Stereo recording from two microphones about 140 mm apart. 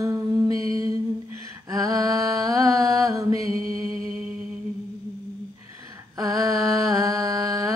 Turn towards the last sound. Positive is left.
turn(degrees=-25)  # may be behind; listen again after turning